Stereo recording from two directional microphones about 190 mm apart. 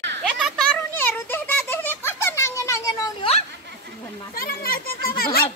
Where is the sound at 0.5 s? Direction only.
5° left (ahead or behind).